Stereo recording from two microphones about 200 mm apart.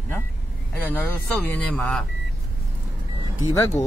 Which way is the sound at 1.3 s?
5° left (ahead or behind).